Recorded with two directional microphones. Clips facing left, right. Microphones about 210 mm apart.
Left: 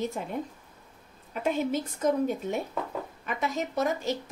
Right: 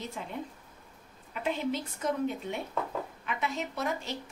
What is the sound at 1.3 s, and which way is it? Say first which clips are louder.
Speech: left 4 dB; 45° left (ahead or behind).